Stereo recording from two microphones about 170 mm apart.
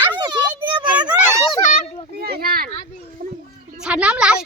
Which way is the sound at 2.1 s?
65° right (ahead or behind).